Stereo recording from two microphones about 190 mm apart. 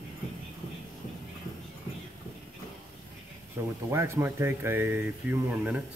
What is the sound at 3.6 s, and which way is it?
Speech, 15° right (ahead or behind).